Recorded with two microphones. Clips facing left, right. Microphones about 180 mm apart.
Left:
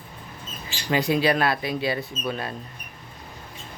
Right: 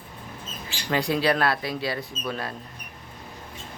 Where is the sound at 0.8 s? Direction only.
5° left (ahead or behind).